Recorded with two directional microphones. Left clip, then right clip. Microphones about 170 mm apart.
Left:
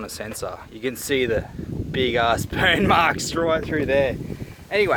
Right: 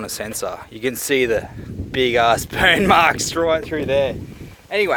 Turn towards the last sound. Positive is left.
turn(degrees=-35)  # may be behind; listen again after turning